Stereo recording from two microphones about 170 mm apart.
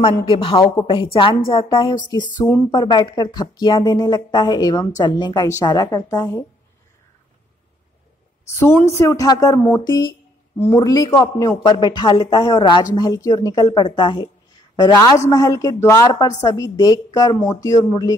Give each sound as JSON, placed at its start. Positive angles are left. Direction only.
{"t": 0.0, "sound": "a woman's voice", "side_deg": 30}
{"t": 8.5, "sound": "a woman's voice", "side_deg": 15}
{"t": 10.6, "sound": "speech", "side_deg": 15}